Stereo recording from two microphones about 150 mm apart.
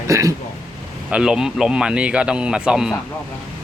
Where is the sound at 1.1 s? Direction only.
5° right (ahead or behind).